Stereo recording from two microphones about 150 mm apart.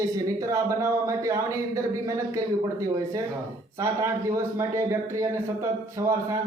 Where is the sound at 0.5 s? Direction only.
20° right (ahead or behind).